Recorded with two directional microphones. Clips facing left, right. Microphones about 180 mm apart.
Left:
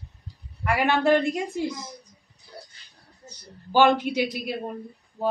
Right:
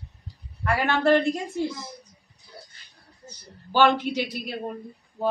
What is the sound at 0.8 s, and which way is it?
Speech, 15° left (ahead or behind).